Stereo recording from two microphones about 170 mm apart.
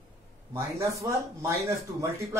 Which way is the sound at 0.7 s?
15° right (ahead or behind).